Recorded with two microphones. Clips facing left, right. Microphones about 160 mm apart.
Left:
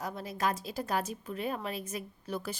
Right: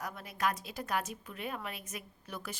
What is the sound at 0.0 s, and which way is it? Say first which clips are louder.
A woman's voice: left 2 dB; 30° left (ahead or behind).